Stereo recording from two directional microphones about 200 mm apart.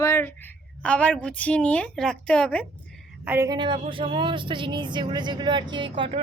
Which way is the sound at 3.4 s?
20° right (ahead or behind).